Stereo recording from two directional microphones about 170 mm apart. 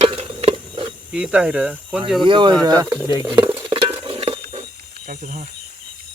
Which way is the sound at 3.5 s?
35° right (ahead or behind).